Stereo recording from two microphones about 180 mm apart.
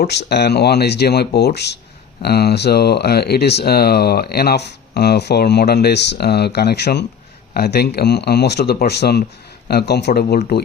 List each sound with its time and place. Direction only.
0.0 s speech: 65° left (ahead or behind)